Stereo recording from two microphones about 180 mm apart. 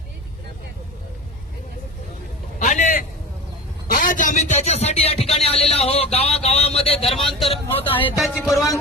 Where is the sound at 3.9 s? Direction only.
50° left (ahead or behind); by 7.1 s 35° left (ahead or behind).